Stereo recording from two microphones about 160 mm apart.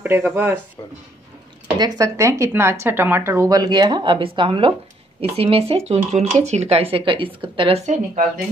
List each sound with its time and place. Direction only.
0.0 s speech: 15° right (ahead or behind)
1.8 s speech: 25° right (ahead or behind); by 8.0 s 45° right (ahead or behind)